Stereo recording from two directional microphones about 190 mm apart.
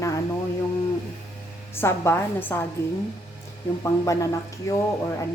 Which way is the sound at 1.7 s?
15° left (ahead or behind).